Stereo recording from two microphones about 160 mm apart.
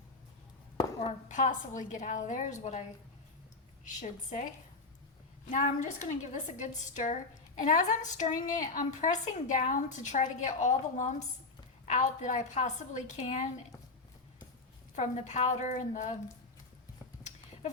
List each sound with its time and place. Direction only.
1.3 s a woman's voice: 50° left (ahead or behind)
4.0 s a woman's voice: 50° left (ahead or behind)
5.5 s a woman's voice: 50° left (ahead or behind)
14.9 s a woman's voice: 50° left (ahead or behind)